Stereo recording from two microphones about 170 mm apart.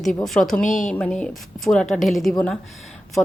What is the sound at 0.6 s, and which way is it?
Speech, 50° left (ahead or behind).